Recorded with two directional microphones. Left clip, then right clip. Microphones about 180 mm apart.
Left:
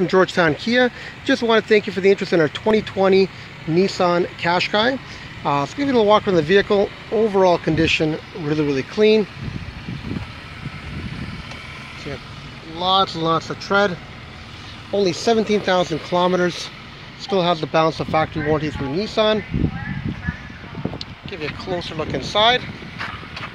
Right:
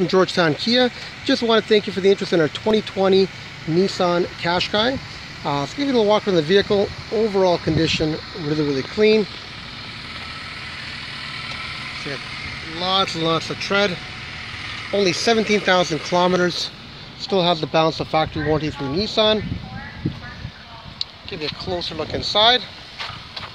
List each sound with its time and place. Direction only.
0.0 s speech: 5° right (ahead or behind)
12.7 s speech: centre (ahead or behind)
21.0 s speech: centre (ahead or behind)